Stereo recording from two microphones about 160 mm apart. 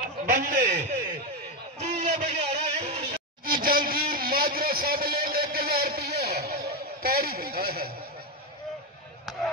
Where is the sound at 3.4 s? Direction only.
65° right (ahead or behind).